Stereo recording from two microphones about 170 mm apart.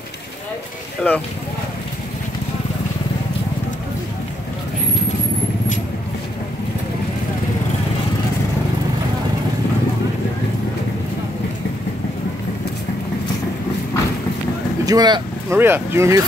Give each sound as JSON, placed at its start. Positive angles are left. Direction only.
{"t": 1.0, "sound": "speech", "side_deg": 5}
{"t": 14.9, "sound": "speech", "side_deg": -25}
{"t": 15.5, "sound": "speech", "side_deg": -15}